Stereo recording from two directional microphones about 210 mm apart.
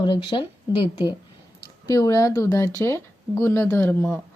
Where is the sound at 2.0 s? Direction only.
15° left (ahead or behind).